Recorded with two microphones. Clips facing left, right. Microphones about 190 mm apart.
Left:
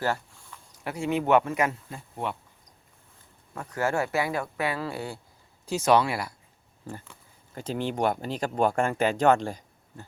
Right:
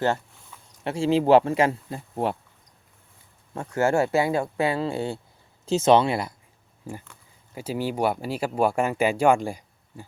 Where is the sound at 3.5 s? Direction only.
25° right (ahead or behind).